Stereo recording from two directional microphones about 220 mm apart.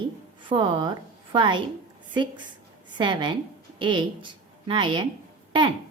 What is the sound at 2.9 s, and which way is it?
A woman's voice, 20° right (ahead or behind).